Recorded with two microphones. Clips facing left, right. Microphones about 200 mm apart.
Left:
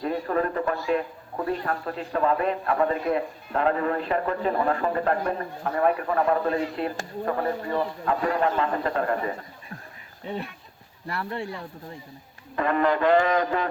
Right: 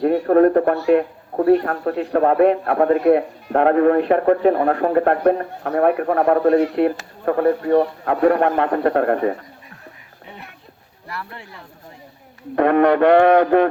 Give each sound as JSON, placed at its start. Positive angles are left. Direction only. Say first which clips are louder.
{"t": 0.0, "sound": "speech", "louder": "right 12 dB", "side_deg": -65}
{"t": 11.1, "sound": "speech", "louder": "left 3 dB", "side_deg": 30}
{"t": 12.5, "sound": "speech", "louder": "right 9 dB", "side_deg": -65}